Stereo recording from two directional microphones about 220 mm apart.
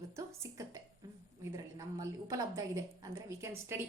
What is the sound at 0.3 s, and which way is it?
A woman's voice, 15° right (ahead or behind).